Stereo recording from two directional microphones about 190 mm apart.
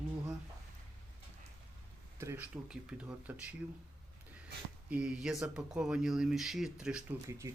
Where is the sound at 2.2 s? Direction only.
10° right (ahead or behind).